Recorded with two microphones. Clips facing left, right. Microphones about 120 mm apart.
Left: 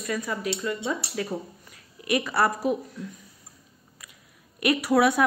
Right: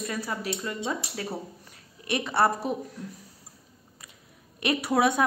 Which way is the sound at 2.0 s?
30° right (ahead or behind).